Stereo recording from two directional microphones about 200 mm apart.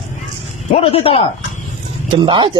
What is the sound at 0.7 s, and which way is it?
Speech, 30° left (ahead or behind).